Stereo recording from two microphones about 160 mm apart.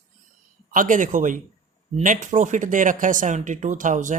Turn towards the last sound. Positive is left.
turn(degrees=-50)  # may be behind; listen again after turning